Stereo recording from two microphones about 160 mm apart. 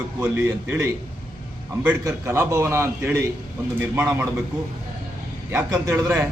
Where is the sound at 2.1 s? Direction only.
15° right (ahead or behind).